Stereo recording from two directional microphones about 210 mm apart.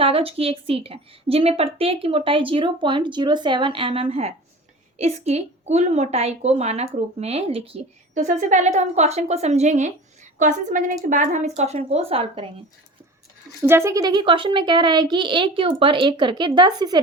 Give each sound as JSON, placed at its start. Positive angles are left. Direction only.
{"t": 0.0, "sound": "a woman's voice", "side_deg": -25}
{"t": 13.6, "sound": "a woman's voice", "side_deg": -10}